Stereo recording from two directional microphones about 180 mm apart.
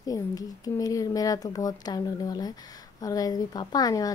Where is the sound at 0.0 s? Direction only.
20° left (ahead or behind).